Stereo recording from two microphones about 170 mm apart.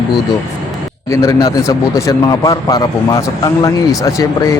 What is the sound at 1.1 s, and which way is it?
Speech, 20° left (ahead or behind).